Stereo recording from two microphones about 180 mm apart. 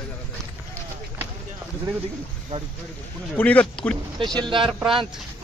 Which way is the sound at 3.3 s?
10° left (ahead or behind).